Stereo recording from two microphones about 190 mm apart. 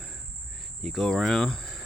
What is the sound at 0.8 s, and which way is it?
Speech, centre (ahead or behind).